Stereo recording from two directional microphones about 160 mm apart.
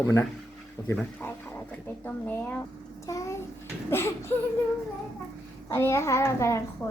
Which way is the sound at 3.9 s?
15° left (ahead or behind).